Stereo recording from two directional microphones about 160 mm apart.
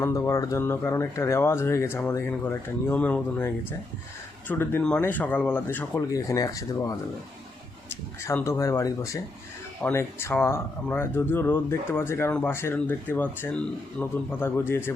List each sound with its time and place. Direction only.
0.0 s speech: 20° left (ahead or behind)
8.2 s speech: 15° left (ahead or behind)